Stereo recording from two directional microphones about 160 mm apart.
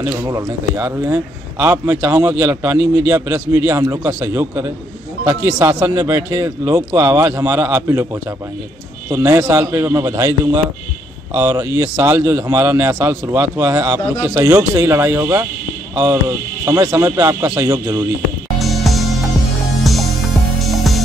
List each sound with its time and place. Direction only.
0.0 s a man's voice: 15° right (ahead or behind)
18.6 s music: centre (ahead or behind)